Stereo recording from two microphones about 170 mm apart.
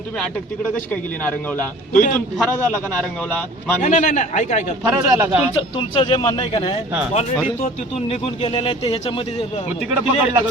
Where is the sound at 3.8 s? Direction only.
45° left (ahead or behind).